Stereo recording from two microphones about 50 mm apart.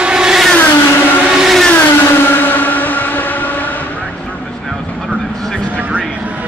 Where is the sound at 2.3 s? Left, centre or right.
Left.